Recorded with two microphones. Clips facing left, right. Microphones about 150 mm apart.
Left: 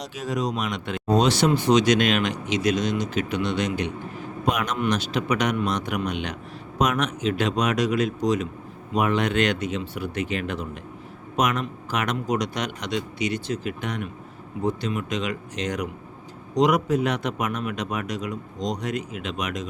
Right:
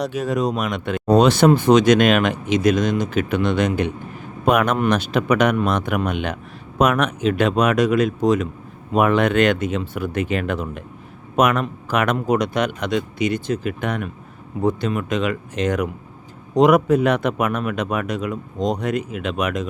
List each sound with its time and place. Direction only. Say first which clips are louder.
0.0 s speech: right 6 dB; 55° right (ahead or behind)